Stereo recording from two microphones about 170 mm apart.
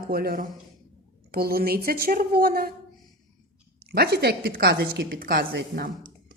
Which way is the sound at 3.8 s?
65° right (ahead or behind).